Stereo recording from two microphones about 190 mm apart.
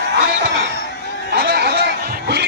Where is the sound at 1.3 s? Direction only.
55° right (ahead or behind).